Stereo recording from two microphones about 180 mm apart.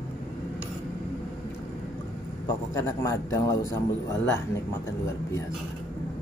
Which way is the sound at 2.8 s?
15° left (ahead or behind).